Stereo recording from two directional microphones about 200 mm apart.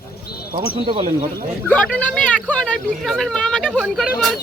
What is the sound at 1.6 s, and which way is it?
Speech, 5° left (ahead or behind).